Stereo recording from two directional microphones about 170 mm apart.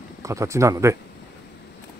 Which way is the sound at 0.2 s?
20° right (ahead or behind).